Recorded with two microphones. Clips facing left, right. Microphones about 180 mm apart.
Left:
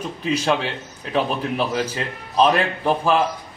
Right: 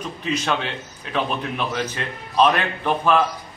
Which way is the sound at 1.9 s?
30° left (ahead or behind).